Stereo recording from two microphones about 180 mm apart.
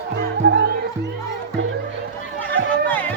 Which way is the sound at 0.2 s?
65° right (ahead or behind).